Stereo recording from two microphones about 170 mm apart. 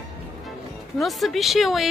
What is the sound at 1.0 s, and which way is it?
Speech, centre (ahead or behind).